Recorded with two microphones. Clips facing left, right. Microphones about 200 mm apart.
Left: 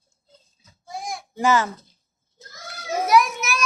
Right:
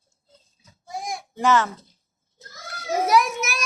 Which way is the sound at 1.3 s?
Centre (ahead or behind).